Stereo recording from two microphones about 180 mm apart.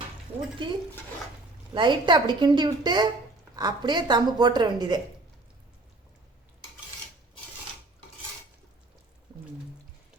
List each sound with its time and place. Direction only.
0.3 s speech: 10° right (ahead or behind)
1.7 s speech: 25° right (ahead or behind)
9.3 s a sound: 25° right (ahead or behind)